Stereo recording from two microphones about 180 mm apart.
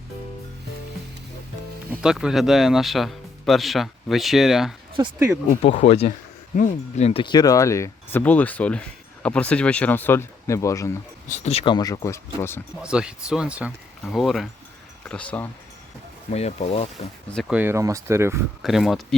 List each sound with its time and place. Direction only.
2.0 s speech: 5° right (ahead or behind)
5.6 s speech: 35° left (ahead or behind); by 10.9 s 15° left (ahead or behind)
11.4 s speech: 30° left (ahead or behind); by 12.6 s 15° left (ahead or behind)
12.8 s speech: 5° right (ahead or behind)
16.3 s speech: 35° left (ahead or behind)
17.5 s speech: 10° right (ahead or behind)
18.6 s speech: centre (ahead or behind)